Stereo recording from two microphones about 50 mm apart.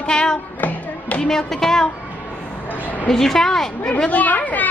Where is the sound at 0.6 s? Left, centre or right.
Left.